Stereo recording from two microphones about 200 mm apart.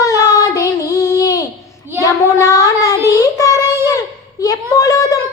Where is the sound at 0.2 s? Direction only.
15° left (ahead or behind).